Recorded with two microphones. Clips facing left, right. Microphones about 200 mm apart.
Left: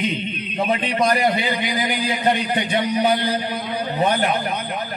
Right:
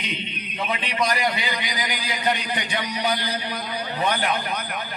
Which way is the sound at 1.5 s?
25° left (ahead or behind).